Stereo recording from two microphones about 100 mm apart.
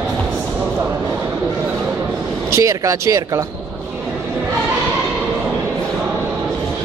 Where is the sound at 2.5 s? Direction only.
30° right (ahead or behind).